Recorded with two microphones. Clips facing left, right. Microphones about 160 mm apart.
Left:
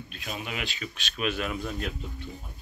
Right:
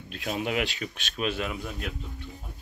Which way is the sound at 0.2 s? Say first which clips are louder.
Right 7 dB; 75° right (ahead or behind).